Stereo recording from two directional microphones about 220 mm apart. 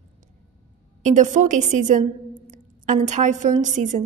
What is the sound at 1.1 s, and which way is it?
A woman's voice, 35° right (ahead or behind).